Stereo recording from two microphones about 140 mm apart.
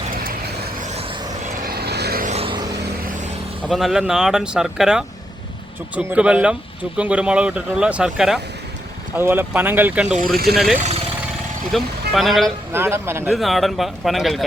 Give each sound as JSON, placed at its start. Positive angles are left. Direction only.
{"t": 1.6, "sound": "vehicle", "side_deg": -90}
{"t": 2.3, "sound": "vehicle", "side_deg": -45}
{"t": 3.7, "sound": "speech", "side_deg": 0}
{"t": 12.7, "sound": "speech", "side_deg": -15}
{"t": 13.3, "sound": "speech", "side_deg": 0}